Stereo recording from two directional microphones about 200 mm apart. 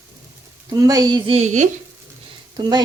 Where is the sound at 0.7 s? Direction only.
20° right (ahead or behind); by 1.7 s 35° right (ahead or behind).